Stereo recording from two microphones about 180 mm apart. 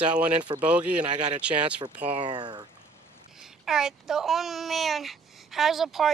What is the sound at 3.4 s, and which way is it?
Speech, 5° right (ahead or behind).